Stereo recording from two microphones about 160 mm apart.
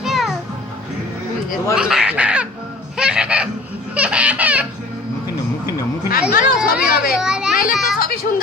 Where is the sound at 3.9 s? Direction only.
10° right (ahead or behind).